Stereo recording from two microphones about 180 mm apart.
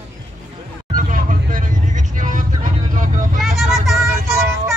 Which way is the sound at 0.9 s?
50° right (ahead or behind).